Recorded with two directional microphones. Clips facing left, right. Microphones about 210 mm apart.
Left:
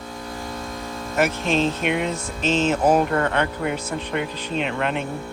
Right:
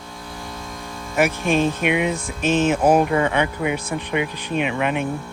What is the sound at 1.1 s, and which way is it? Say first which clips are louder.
Speech: right 2 dB; 10° right (ahead or behind).